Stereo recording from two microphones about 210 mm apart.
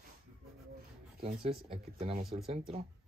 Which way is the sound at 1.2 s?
25° right (ahead or behind).